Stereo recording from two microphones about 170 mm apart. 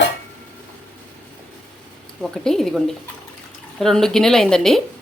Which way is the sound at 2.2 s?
Centre (ahead or behind).